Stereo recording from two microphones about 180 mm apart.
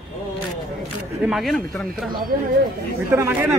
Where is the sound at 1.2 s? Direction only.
Centre (ahead or behind).